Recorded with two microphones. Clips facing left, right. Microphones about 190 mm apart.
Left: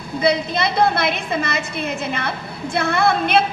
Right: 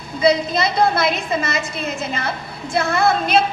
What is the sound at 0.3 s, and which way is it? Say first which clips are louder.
A woman's voice: right 2 dB; 55° left (ahead or behind).